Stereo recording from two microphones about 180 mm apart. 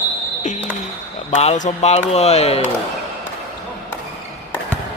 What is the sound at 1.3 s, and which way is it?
Speech, 40° left (ahead or behind).